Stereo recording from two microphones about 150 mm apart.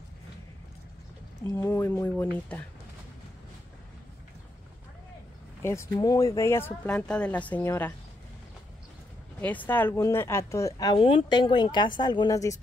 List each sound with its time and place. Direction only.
1.4 s speech: 15° left (ahead or behind)
5.6 s speech: 15° left (ahead or behind)
9.4 s speech: 10° left (ahead or behind)
11.0 s speech: 35° left (ahead or behind)